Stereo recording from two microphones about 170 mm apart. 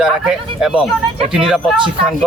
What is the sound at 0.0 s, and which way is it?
Speech, 5° right (ahead or behind).